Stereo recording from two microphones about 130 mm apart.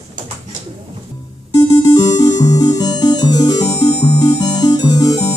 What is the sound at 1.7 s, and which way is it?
Music, 30° left (ahead or behind).